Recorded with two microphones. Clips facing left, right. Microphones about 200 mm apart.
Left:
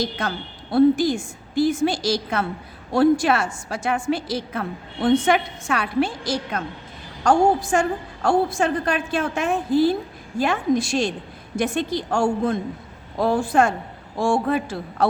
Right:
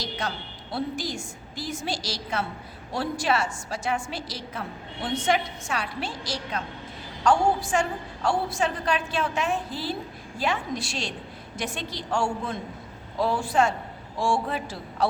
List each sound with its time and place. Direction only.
0.0 s a woman's voice: 55° left (ahead or behind)